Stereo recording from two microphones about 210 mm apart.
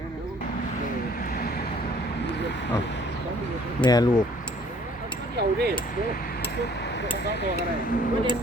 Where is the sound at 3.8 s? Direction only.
20° left (ahead or behind).